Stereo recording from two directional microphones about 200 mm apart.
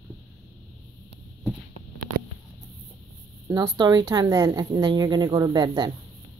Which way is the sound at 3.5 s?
20° right (ahead or behind).